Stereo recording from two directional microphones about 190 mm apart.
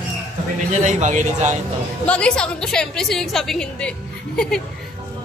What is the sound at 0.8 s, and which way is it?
Speech, 40° right (ahead or behind).